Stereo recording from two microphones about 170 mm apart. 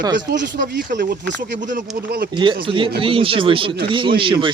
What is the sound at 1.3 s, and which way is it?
Speech, 90° right.